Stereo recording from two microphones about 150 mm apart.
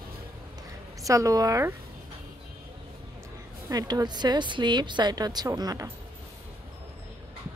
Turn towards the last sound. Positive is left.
turn(degrees=-25)  # may be behind; listen again after turning